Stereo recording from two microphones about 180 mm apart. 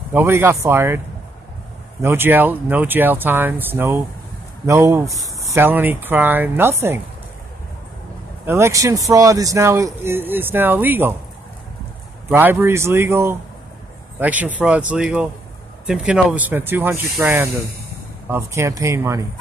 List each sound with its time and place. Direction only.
0.1 s speech: 15° right (ahead or behind)
8.5 s speech: 15° right (ahead or behind)
12.3 s speech: 10° right (ahead or behind)